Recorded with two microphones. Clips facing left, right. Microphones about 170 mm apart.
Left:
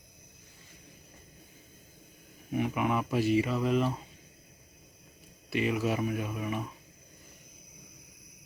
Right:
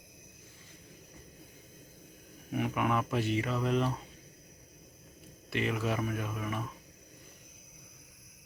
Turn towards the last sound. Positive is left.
turn(degrees=10)  # may be behind; listen again after turning